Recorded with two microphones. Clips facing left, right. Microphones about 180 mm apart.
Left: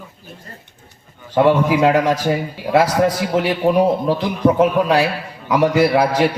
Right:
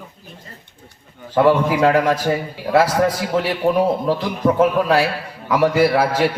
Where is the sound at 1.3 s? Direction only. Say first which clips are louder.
Left 1 dB; 15° left (ahead or behind).